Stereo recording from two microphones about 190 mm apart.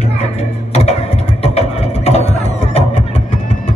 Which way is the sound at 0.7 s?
30° left (ahead or behind).